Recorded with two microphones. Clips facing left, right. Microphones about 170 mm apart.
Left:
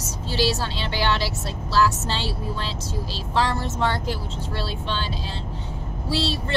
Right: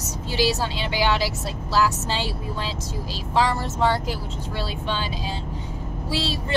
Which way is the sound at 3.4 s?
10° right (ahead or behind).